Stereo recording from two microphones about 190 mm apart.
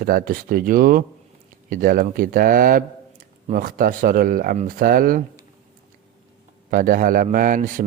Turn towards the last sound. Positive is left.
turn(degrees=-45)  # may be behind; listen again after turning